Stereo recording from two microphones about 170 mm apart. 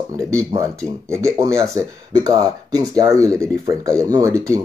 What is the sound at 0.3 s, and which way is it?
Speech, 20° right (ahead or behind).